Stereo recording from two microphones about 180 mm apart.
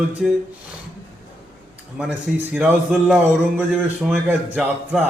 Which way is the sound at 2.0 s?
5° right (ahead or behind).